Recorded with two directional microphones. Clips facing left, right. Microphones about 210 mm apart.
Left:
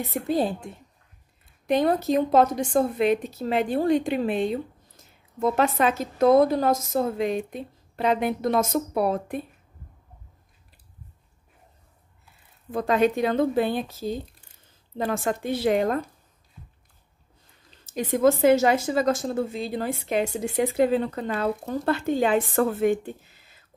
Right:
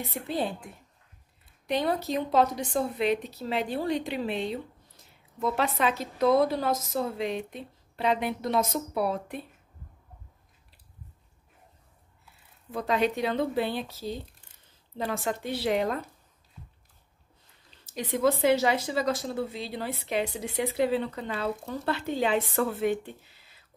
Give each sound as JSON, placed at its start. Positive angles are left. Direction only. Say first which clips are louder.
{"t": 0.3, "sound": "a woman's voice", "louder": "left 6 dB", "side_deg": 40}
{"t": 1.7, "sound": "speech", "louder": "left 6 dB", "side_deg": 50}
{"t": 12.7, "sound": "speech", "louder": "left 5 dB", "side_deg": 50}
{"t": 17.8, "sound": "speech", "louder": "left 5 dB", "side_deg": 50}